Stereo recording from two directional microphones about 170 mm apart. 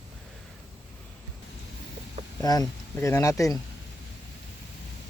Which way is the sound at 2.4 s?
20° left (ahead or behind).